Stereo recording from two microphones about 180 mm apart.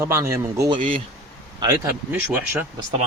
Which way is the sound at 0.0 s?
15° right (ahead or behind).